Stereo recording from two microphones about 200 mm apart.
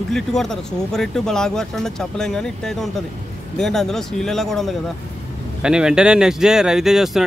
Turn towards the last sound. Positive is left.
turn(degrees=0)  # may be behind; listen again after turning